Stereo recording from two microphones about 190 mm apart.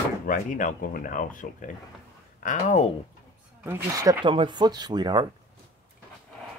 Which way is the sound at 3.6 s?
15° right (ahead or behind).